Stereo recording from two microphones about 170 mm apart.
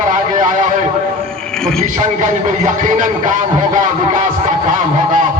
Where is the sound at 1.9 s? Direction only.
50° right (ahead or behind).